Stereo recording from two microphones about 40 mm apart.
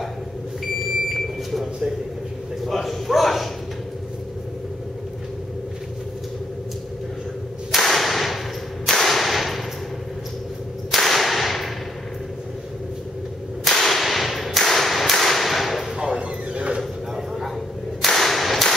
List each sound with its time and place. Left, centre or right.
1.0 s smoke detector: centre
2.6 s bow-wow: centre
7.7 s whip: centre
10.9 s whip: centre
13.7 s whip: centre
16.2 s a sound: right
18.0 s whip: centre